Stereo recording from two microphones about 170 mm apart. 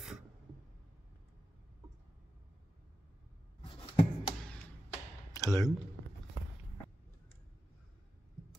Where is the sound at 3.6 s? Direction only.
35° left (ahead or behind).